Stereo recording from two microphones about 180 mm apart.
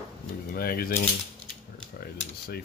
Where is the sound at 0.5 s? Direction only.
55° left (ahead or behind).